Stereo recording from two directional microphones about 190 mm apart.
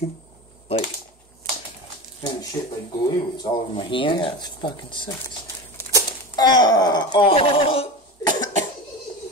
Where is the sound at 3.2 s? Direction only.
20° left (ahead or behind).